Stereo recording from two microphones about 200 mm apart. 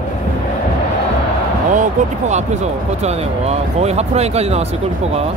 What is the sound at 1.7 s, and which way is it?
Speech, 35° right (ahead or behind).